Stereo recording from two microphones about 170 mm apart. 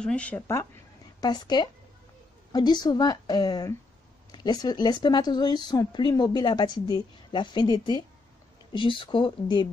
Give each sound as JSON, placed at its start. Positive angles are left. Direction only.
{"t": 0.0, "sound": "speech", "side_deg": 5}
{"t": 1.2, "sound": "speech", "side_deg": 25}